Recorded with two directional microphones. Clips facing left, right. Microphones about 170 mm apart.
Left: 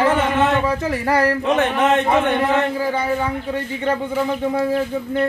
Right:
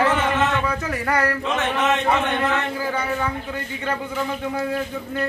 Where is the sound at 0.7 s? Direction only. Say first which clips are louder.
Left 4 dB; 30° left (ahead or behind).